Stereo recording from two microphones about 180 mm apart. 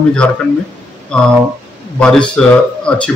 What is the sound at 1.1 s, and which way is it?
A man's voice, 5° left (ahead or behind).